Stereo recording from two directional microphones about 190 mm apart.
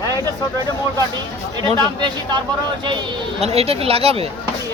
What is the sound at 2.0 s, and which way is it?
Speech, 25° right (ahead or behind).